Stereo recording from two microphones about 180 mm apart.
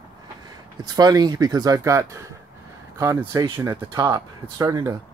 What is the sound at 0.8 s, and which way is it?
Speech, 20° right (ahead or behind).